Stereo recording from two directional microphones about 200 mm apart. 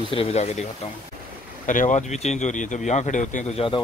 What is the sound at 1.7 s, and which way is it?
Speech, 40° left (ahead or behind).